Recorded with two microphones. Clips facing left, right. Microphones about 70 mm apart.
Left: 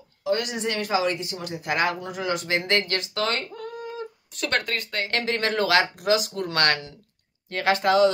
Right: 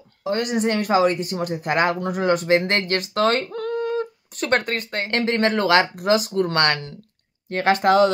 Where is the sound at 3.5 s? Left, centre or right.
Right.